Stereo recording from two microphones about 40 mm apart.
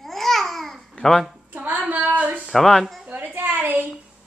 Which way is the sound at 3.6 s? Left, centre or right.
Right.